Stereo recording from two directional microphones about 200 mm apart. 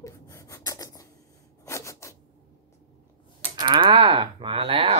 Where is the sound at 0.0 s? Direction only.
15° left (ahead or behind).